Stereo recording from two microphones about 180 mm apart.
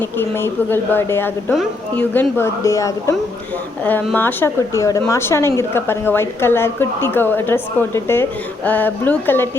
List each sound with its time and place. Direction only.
0.0 s speech: 10° left (ahead or behind)